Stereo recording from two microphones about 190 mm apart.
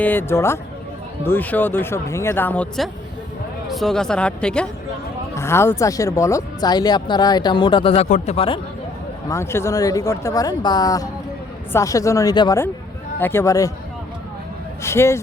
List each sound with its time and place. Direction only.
0.0 s speech: 10° left (ahead or behind); by 8.6 s 30° left (ahead or behind)
9.3 s speech: 15° left (ahead or behind)
14.8 s speech: 15° left (ahead or behind)